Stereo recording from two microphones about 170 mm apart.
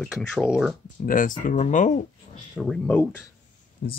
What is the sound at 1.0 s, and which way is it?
Speech, 55° left (ahead or behind).